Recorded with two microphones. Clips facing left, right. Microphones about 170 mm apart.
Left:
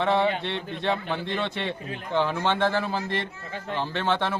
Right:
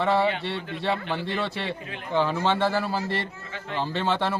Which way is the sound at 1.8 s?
40° left (ahead or behind).